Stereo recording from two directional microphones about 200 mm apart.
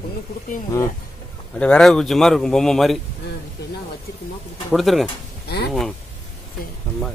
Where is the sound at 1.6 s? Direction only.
5° left (ahead or behind).